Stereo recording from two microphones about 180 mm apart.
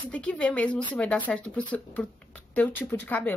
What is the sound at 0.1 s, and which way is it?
Speech, 5° left (ahead or behind).